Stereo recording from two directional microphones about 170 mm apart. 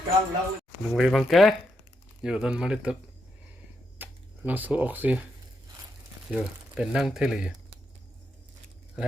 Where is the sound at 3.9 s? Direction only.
10° right (ahead or behind).